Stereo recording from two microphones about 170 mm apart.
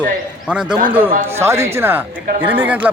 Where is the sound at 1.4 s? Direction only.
15° right (ahead or behind).